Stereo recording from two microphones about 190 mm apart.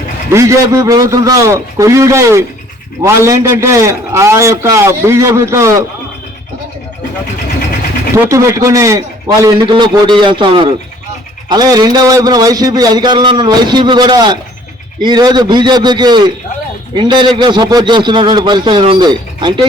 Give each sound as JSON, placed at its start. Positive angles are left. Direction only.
{"t": 0.3, "sound": "a man's voice", "side_deg": -15}
{"t": 8.1, "sound": "a man's voice", "side_deg": -15}